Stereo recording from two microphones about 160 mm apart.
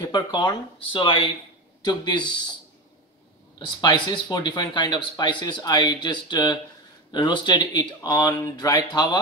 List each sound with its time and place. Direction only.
0.0 s speech: 30° left (ahead or behind)
3.5 s speech: 30° left (ahead or behind)